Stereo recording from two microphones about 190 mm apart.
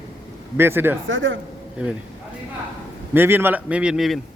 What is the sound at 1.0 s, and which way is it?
Speech, 90° right.